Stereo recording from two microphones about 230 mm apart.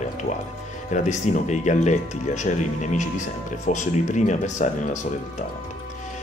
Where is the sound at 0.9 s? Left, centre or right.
Left.